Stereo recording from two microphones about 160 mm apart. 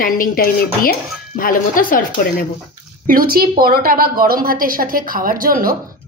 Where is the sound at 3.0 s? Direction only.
65° right (ahead or behind).